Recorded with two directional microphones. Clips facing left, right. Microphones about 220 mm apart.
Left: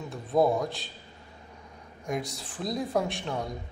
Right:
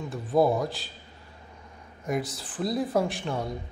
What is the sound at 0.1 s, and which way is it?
Speech, centre (ahead or behind).